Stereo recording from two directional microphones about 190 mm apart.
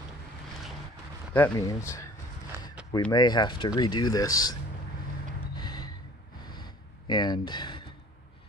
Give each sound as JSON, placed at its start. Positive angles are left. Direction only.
{"t": 1.3, "sound": "speech", "side_deg": 15}
{"t": 3.1, "sound": "speech", "side_deg": 20}
{"t": 5.6, "sound": "gasp", "side_deg": 20}
{"t": 6.4, "sound": "a sound", "side_deg": 20}